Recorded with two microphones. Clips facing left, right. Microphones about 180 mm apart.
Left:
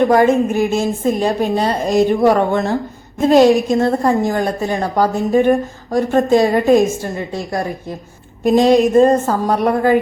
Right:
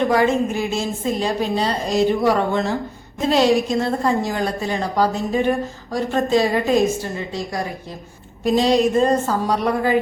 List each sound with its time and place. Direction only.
0.1 s a woman's voice: 50° left (ahead or behind)
8.4 s a woman's voice: 50° left (ahead or behind)